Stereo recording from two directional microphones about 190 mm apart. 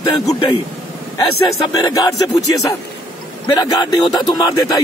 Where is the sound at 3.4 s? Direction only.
20° left (ahead or behind).